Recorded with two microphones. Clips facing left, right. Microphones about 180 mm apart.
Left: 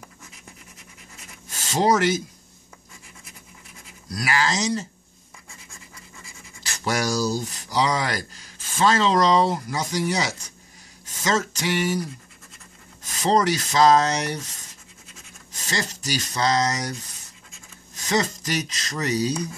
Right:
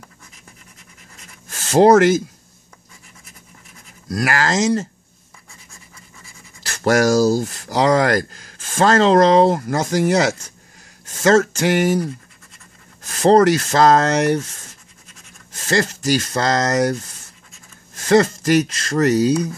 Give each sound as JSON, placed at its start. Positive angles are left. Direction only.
{"t": 1.5, "sound": "speech", "side_deg": -50}
{"t": 4.1, "sound": "speech", "side_deg": -55}
{"t": 6.7, "sound": "speech", "side_deg": -50}
{"t": 15.5, "sound": "speech", "side_deg": -50}
{"t": 18.0, "sound": "speech", "side_deg": -55}